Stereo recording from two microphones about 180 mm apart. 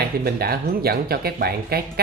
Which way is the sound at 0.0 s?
60° right (ahead or behind).